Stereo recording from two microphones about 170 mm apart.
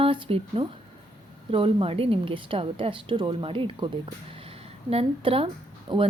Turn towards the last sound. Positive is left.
turn(degrees=-30)  # may be behind; listen again after turning